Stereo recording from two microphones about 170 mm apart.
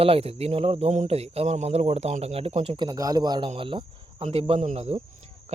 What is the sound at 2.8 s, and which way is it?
Speech, 20° right (ahead or behind).